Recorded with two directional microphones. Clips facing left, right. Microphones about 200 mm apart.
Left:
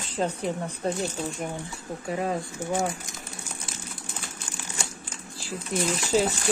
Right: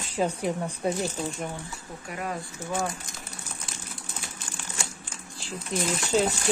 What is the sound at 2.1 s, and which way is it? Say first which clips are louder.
Speech: left 5 dB; 25° left (ahead or behind).